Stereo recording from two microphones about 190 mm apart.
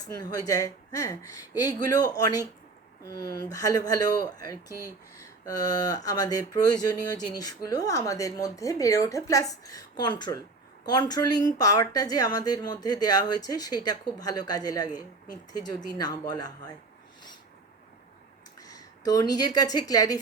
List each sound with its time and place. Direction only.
0.0 s a woman's voice: 20° left (ahead or behind)
18.6 s speech: 20° left (ahead or behind)